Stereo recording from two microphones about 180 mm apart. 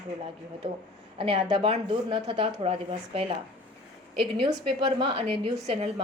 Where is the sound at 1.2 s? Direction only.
30° right (ahead or behind).